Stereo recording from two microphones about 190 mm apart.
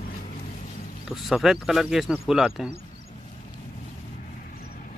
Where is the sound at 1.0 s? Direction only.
Centre (ahead or behind).